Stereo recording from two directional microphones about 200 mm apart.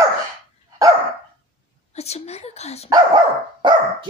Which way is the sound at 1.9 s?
30° left (ahead or behind).